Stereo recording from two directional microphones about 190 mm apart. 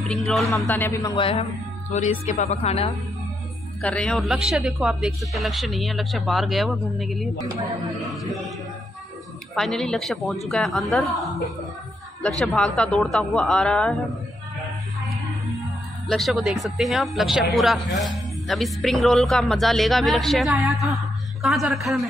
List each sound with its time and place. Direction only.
0.7 s speech: 10° left (ahead or behind)
1.1 s speech: 30° left (ahead or behind)
3.8 s speech: 5° left (ahead or behind)
9.6 s speech: centre (ahead or behind)
15.5 s speech: centre (ahead or behind)